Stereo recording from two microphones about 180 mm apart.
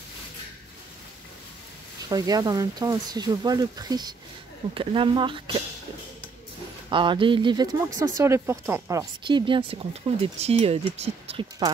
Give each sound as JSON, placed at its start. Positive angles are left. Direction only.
{"t": 2.0, "sound": "speech", "side_deg": -20}
{"t": 6.9, "sound": "speech", "side_deg": -25}
{"t": 9.3, "sound": "speech", "side_deg": -30}